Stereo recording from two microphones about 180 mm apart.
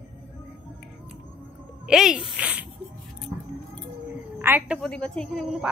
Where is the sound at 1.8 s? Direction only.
5° right (ahead or behind).